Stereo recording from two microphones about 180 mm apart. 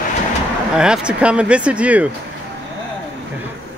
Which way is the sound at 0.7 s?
5° right (ahead or behind).